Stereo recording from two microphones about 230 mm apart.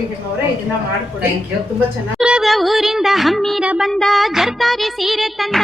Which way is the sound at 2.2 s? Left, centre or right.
Centre.